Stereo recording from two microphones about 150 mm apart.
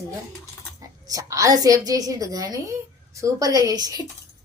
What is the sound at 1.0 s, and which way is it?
A woman's voice, 25° right (ahead or behind).